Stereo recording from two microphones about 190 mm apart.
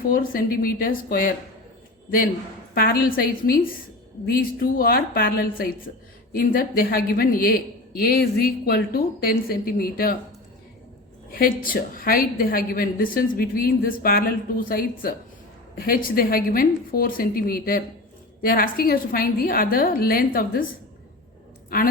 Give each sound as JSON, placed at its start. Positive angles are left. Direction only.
{"t": 0.1, "sound": "a woman's voice", "side_deg": 50}
{"t": 11.3, "sound": "a woman's voice", "side_deg": 50}
{"t": 21.7, "sound": "a woman's voice", "side_deg": 50}